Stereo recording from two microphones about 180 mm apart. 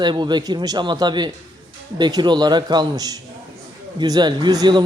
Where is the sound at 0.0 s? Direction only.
25° right (ahead or behind).